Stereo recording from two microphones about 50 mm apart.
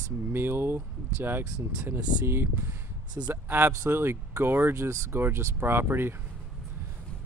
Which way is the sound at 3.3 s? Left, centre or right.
Right.